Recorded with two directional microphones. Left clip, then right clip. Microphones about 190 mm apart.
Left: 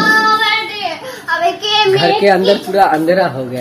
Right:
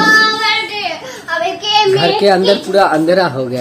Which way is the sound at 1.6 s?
25° left (ahead or behind).